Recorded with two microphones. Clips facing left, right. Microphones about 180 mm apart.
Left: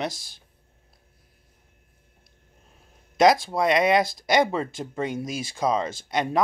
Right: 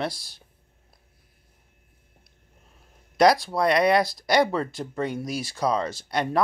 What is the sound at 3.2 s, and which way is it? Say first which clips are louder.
Speech: even; 25° left (ahead or behind).